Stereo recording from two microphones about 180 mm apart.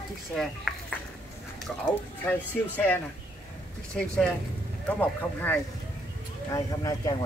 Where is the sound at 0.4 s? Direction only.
Centre (ahead or behind).